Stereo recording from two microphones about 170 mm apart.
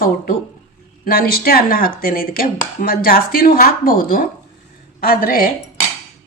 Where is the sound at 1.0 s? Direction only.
60° left (ahead or behind).